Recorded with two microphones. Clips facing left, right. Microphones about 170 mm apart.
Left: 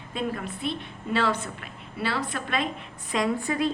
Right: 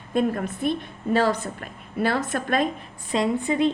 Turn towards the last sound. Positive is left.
turn(degrees=-20)  # may be behind; listen again after turning